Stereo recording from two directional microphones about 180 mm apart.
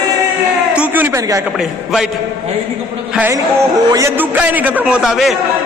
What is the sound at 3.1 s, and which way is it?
A man's voice, 10° right (ahead or behind).